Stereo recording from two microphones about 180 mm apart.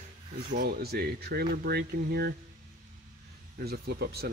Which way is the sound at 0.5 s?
60° right (ahead or behind).